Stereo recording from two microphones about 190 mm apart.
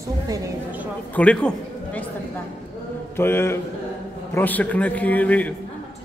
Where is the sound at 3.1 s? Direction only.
10° left (ahead or behind).